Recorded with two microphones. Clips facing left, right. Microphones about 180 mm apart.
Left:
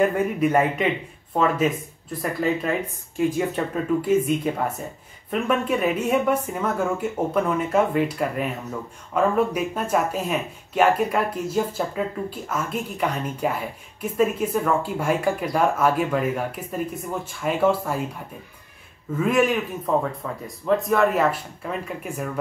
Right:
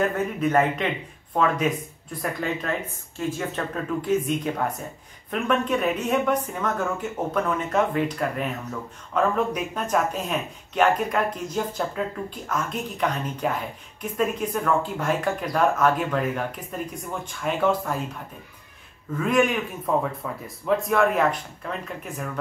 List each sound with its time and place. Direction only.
0.0 s a man's voice: 10° left (ahead or behind)
3.3 s speech: 10° left (ahead or behind)
19.1 s a man's voice: 5° left (ahead or behind)